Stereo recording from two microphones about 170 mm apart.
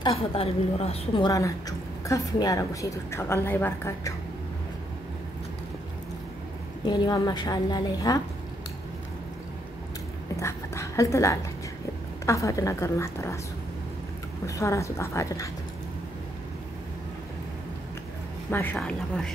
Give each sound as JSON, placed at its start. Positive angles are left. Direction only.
{"t": 0.3, "sound": "a woman's voice", "side_deg": 35}
{"t": 1.2, "sound": "a woman's voice", "side_deg": 20}
{"t": 6.9, "sound": "a woman's voice", "side_deg": 25}
{"t": 10.4, "sound": "a sound", "side_deg": 15}
{"t": 12.3, "sound": "a woman's voice", "side_deg": 20}
{"t": 14.4, "sound": "a woman's voice", "side_deg": 20}
{"t": 18.5, "sound": "a woman's voice", "side_deg": 10}